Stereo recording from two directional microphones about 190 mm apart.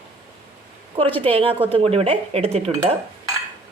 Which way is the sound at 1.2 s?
30° right (ahead or behind).